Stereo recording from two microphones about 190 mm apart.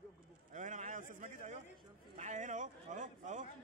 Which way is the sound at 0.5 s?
40° right (ahead or behind).